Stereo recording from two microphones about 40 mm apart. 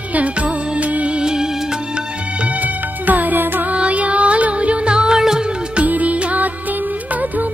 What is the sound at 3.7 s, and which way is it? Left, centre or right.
Music, right.